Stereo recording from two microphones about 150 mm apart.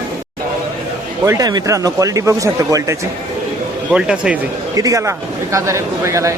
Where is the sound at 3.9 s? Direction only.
5° right (ahead or behind).